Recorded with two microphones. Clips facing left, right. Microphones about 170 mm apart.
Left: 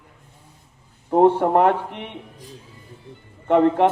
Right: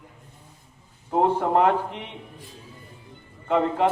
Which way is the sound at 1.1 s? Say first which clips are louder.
Left 5 dB; 55° left (ahead or behind).